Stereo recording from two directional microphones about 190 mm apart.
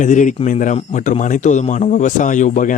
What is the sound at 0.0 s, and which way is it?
Speech, 40° left (ahead or behind).